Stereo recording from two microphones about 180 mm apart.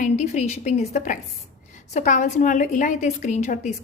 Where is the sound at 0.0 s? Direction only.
40° left (ahead or behind).